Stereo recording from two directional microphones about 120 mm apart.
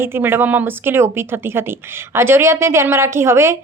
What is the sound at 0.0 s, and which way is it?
Speech, 20° right (ahead or behind).